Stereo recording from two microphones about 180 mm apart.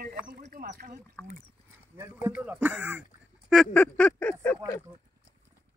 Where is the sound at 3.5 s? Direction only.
5° left (ahead or behind).